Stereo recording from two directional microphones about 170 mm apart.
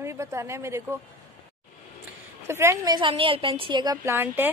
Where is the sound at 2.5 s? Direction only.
15° right (ahead or behind).